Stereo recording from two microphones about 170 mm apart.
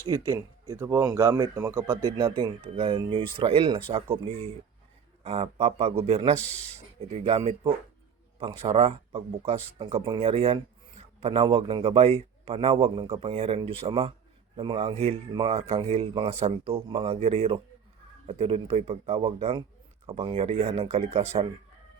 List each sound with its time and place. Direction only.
0.3 s a man's voice: 20° right (ahead or behind); by 21.4 s 40° right (ahead or behind)